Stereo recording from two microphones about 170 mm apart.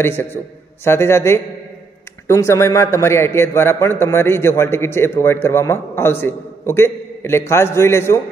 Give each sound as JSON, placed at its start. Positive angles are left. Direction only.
{"t": 0.0, "sound": "a man's voice", "side_deg": 15}